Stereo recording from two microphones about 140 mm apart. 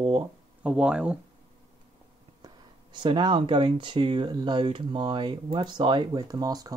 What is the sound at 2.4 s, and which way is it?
Speech, 35° right (ahead or behind).